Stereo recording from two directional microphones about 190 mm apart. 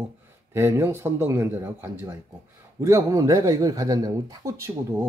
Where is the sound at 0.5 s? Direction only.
15° right (ahead or behind).